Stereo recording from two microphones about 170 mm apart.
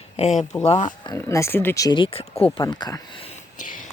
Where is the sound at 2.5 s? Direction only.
20° left (ahead or behind).